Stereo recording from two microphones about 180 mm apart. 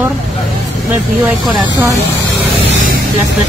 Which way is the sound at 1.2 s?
Centre (ahead or behind).